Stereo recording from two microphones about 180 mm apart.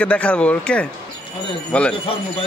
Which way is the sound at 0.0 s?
5° left (ahead or behind).